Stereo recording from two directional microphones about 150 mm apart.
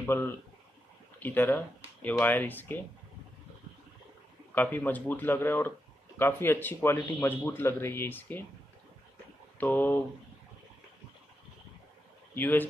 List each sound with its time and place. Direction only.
0.0 s speech: 15° left (ahead or behind)
4.6 s speech: 10° left (ahead or behind)
9.6 s speech: 10° left (ahead or behind)
12.4 s speech: 10° left (ahead or behind)